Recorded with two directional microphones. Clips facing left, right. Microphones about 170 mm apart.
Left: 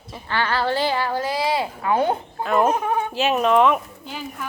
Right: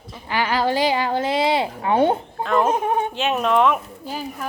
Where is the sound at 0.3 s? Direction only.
15° right (ahead or behind).